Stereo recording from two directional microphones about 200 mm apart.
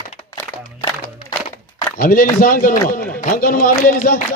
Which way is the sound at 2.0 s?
45° left (ahead or behind).